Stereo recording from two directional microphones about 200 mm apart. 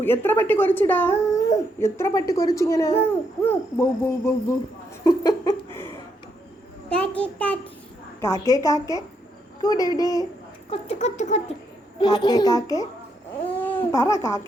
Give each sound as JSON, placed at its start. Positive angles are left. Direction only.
{"t": 0.0, "sound": "speech", "side_deg": 10}
{"t": 5.0, "sound": "laughter", "side_deg": 20}
{"t": 7.0, "sound": "a child's voice", "side_deg": 5}
{"t": 10.7, "sound": "a sound", "side_deg": 35}
{"t": 11.9, "sound": "a child's voice", "side_deg": 25}